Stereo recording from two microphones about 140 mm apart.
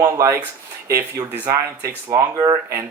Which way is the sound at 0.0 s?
20° right (ahead or behind).